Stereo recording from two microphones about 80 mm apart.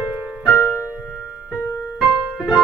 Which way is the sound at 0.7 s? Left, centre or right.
Left.